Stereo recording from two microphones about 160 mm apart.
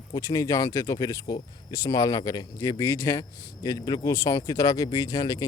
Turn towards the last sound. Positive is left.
turn(degrees=25)  # may be behind; listen again after turning